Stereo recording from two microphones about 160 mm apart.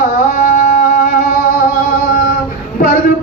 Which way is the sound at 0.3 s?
55° left (ahead or behind).